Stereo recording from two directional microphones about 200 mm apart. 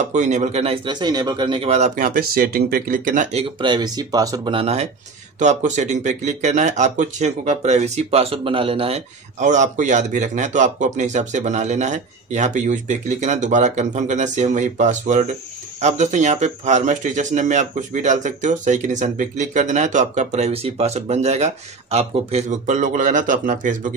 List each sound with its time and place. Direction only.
0.1 s speech: 35° right (ahead or behind)